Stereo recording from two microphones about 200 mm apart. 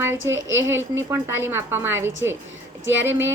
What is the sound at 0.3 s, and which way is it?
Speech, 70° right (ahead or behind).